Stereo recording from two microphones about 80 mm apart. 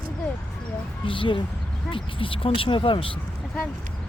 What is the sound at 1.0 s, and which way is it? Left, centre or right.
Speech, left.